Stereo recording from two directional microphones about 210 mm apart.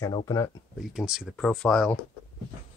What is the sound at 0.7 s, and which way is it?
Speech, centre (ahead or behind).